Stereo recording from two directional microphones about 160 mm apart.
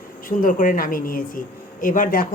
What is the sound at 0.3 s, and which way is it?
Speech, 55° left (ahead or behind).